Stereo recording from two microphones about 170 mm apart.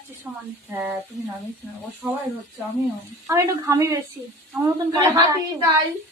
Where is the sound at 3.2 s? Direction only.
15° right (ahead or behind).